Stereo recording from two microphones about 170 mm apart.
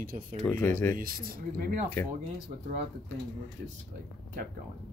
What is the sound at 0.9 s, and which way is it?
Speech, 60° right (ahead or behind).